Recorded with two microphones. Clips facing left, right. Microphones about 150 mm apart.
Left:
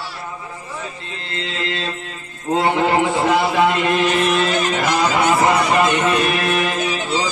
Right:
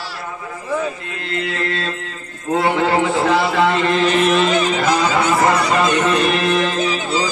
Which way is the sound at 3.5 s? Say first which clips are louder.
Even; 15° left (ahead or behind).